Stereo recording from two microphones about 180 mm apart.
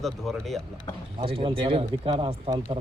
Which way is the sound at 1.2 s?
30° right (ahead or behind).